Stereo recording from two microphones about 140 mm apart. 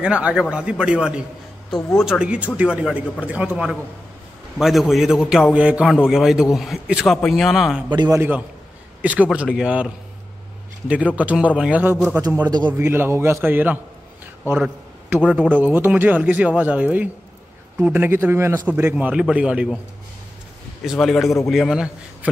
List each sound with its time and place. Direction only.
0.0 s a man's voice: 10° right (ahead or behind)
7.9 s a man's voice: 30° right (ahead or behind)
8.2 s speech: 10° right (ahead or behind)
11.1 s a man's voice: 10° right (ahead or behind)
15.2 s speech: 5° left (ahead or behind)
15.5 s speech: 15° right (ahead or behind)
20.8 s a man's voice: centre (ahead or behind)